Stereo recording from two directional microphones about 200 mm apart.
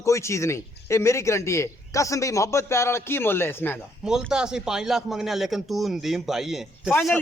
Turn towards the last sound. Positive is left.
turn(degrees=0)  # may be behind; listen again after turning